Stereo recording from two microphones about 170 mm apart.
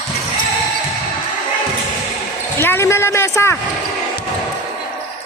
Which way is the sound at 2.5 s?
15° left (ahead or behind).